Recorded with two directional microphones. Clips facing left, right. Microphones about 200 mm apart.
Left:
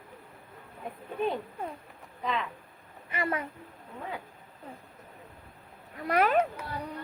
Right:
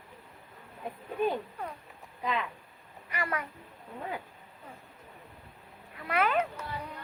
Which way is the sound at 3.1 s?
25° left (ahead or behind).